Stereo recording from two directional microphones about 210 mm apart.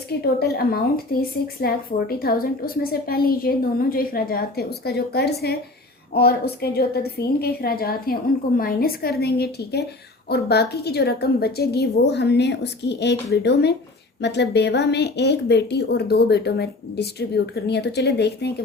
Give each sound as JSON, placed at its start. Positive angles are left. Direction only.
{"t": 0.1, "sound": "a woman's voice", "side_deg": 50}